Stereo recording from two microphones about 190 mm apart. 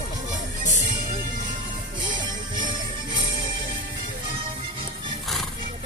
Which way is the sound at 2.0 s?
25° right (ahead or behind).